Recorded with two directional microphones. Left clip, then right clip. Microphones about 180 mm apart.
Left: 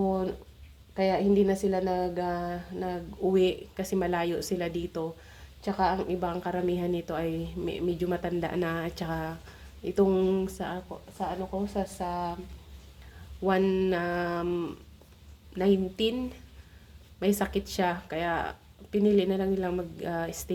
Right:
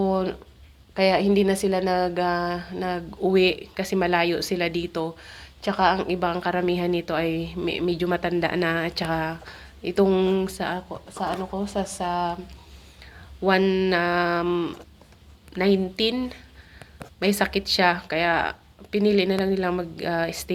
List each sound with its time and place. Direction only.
0.0 s a sound: 15° left (ahead or behind)
0.9 s a woman's voice: 15° left (ahead or behind)
13.5 s speech: 15° left (ahead or behind)